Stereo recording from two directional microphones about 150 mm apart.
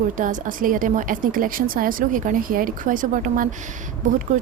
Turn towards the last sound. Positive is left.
turn(degrees=-60)  # may be behind; listen again after turning